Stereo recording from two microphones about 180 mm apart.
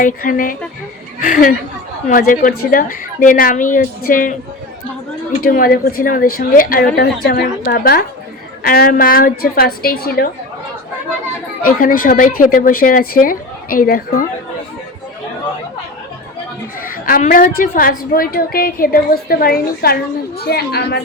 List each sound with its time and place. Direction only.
0.0 s a woman's voice: 50° left (ahead or behind)
5.4 s a woman's voice: 55° left (ahead or behind)
11.8 s a woman's voice: 50° left (ahead or behind)
16.8 s a woman's voice: 50° left (ahead or behind)